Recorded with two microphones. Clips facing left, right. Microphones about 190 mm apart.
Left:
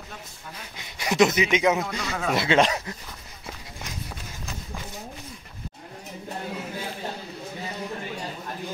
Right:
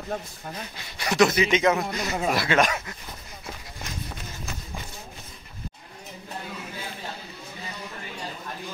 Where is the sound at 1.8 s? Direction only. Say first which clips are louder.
Right 2 dB; 20° right (ahead or behind).